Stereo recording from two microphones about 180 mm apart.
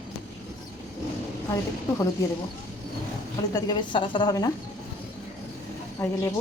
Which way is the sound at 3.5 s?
25° left (ahead or behind).